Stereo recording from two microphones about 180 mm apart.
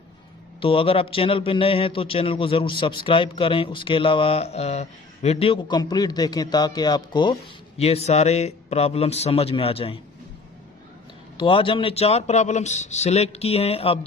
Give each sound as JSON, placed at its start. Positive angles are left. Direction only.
{"t": 0.6, "sound": "a man's voice", "side_deg": 30}
{"t": 11.3, "sound": "a man's voice", "side_deg": 30}